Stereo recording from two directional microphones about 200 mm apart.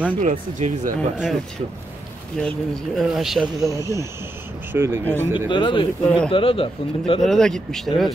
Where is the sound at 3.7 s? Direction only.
15° right (ahead or behind).